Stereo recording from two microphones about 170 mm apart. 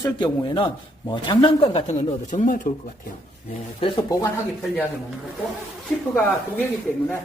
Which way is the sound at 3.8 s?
25° left (ahead or behind).